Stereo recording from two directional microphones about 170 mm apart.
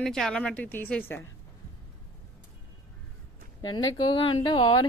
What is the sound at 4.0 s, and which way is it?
Speech, 30° left (ahead or behind).